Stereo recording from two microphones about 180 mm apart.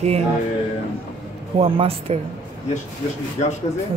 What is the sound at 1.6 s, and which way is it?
Speech, 30° right (ahead or behind).